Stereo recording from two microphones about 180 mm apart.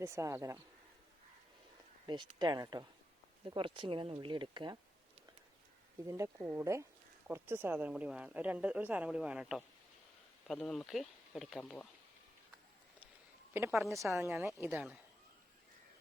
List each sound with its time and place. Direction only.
0.0 s a woman's voice: 15° right (ahead or behind)
2.0 s speech: 25° right (ahead or behind)
6.1 s a woman's voice: 15° right (ahead or behind); by 11.9 s centre (ahead or behind)
13.5 s a woman's voice: 10° right (ahead or behind)